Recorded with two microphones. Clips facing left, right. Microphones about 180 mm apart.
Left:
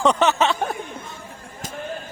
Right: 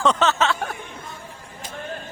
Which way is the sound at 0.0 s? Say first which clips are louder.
Left 2 dB; 15° left (ahead or behind).